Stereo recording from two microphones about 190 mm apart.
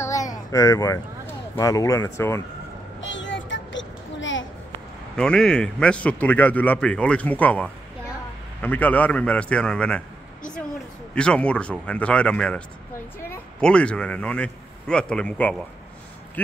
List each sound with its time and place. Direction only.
0.0 s speech: 15° left (ahead or behind)
3.0 s a sound: 75° left (ahead or behind)
5.1 s a man's voice: 5° left (ahead or behind)